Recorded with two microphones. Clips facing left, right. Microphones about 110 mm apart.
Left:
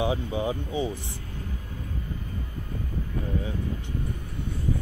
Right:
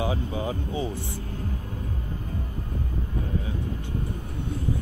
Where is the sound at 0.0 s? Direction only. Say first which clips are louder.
Left 1 dB; 20° left (ahead or behind).